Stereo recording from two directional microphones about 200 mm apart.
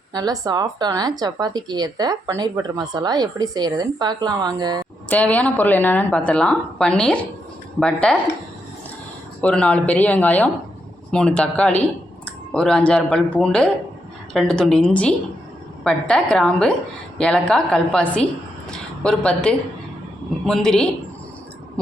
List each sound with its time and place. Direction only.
0.1 s speech: 20° right (ahead or behind)
5.0 s a woman's voice: 5° left (ahead or behind)
9.4 s a woman's voice: 5° left (ahead or behind)